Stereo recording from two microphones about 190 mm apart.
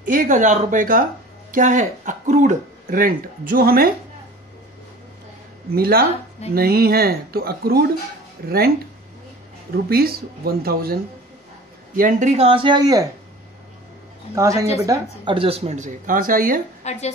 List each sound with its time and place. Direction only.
0.0 s speech: 45° right (ahead or behind)
5.8 s speech: 50° right (ahead or behind)
9.8 s speech: 55° right (ahead or behind)
12.0 s speech: 45° right (ahead or behind); by 13.0 s 20° right (ahead or behind)
14.3 s speech: 15° right (ahead or behind)
15.3 s speech: 30° right (ahead or behind); by 16.6 s 45° right (ahead or behind)
16.8 s a woman's voice: 35° left (ahead or behind)